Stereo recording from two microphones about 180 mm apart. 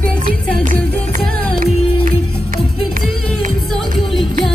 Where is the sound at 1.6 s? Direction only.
50° right (ahead or behind).